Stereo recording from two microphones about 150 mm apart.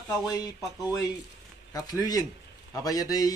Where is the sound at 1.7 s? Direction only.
25° left (ahead or behind).